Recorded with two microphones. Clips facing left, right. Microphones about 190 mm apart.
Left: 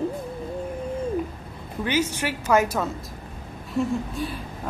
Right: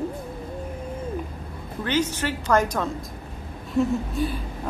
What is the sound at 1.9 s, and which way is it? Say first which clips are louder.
A woman's voice: right 1 dB; 10° left (ahead or behind).